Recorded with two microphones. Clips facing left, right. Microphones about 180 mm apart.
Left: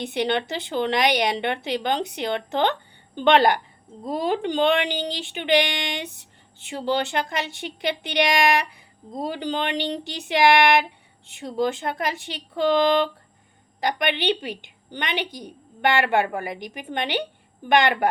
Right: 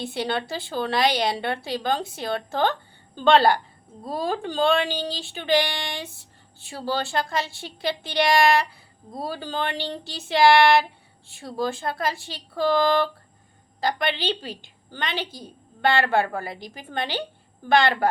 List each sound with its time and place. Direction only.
0.0 s a woman's voice: 20° left (ahead or behind)